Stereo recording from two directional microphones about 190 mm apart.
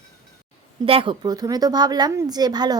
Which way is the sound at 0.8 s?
30° right (ahead or behind).